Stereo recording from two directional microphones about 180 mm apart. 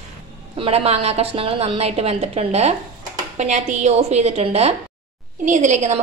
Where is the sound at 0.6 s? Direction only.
35° right (ahead or behind).